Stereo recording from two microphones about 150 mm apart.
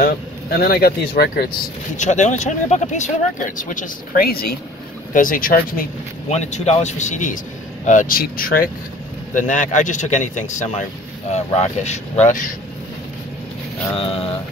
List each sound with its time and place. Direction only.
0.0 s speech: 85° left
2.0 s speech: 55° left (ahead or behind); by 4.5 s 85° left
5.1 s speech: 65° left (ahead or behind)
6.2 s speech: 50° left (ahead or behind); by 8.6 s 75° left (ahead or behind)
9.3 s speech: 55° left (ahead or behind)
13.9 s mantra: 40° left (ahead or behind)